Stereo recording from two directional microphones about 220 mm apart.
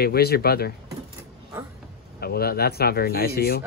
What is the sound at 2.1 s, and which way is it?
Speech, 45° left (ahead or behind).